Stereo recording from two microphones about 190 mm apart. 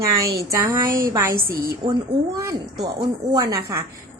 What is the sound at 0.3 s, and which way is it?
A woman's voice, 15° right (ahead or behind).